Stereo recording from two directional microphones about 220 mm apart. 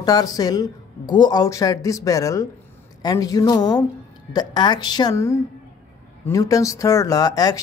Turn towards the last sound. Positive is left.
turn(degrees=15)  # may be behind; listen again after turning